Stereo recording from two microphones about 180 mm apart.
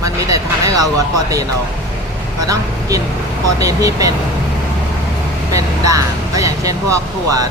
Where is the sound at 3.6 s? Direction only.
20° right (ahead or behind).